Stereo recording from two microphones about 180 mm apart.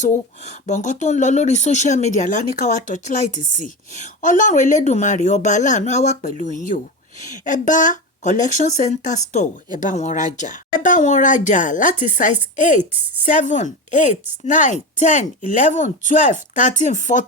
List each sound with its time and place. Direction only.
0.0 s speech: 45° left (ahead or behind)
12.9 s a woman's voice: 10° right (ahead or behind)
13.2 s speech: 45° left (ahead or behind)